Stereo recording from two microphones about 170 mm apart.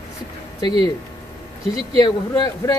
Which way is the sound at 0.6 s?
25° left (ahead or behind).